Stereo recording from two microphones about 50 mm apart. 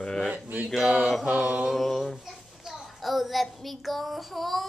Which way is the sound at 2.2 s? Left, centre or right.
Centre.